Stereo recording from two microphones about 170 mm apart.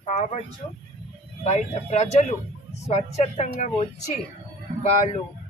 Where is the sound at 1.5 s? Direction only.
40° left (ahead or behind).